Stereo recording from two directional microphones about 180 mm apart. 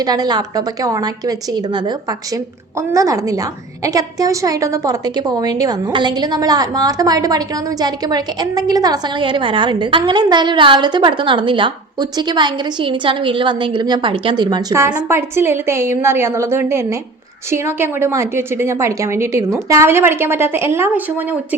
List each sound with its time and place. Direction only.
0.0 s a woman's voice: 20° right (ahead or behind)
14.8 s a woman's voice: 10° right (ahead or behind)